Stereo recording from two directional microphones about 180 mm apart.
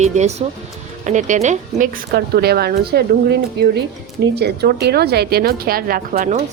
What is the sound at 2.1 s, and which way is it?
A woman's voice, 60° right (ahead or behind).